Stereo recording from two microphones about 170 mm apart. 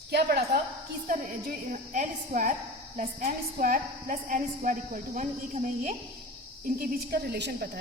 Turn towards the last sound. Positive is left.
turn(degrees=-75)  # may be behind; listen again after turning